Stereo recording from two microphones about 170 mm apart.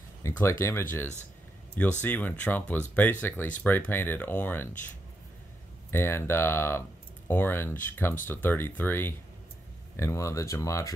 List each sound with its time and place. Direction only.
0.2 s speech: 15° left (ahead or behind)